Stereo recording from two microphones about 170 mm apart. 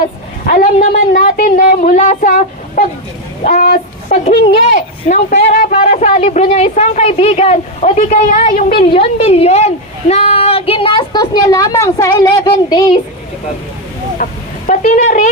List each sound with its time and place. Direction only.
0.4 s a sound: 45° left (ahead or behind)
3.4 s speech: 55° left (ahead or behind)
5.0 s a woman's voice: 45° left (ahead or behind)
8.8 s speech: 35° left (ahead or behind)
14.2 s a woman's voice: 50° left (ahead or behind)